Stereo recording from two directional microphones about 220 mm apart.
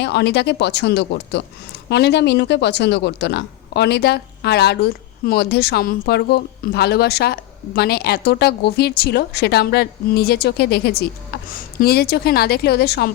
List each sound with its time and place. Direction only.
0.0 s speech: 50° left (ahead or behind)